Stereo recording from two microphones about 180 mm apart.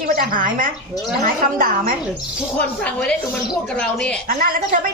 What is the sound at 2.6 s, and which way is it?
A woman's voice, 5° left (ahead or behind).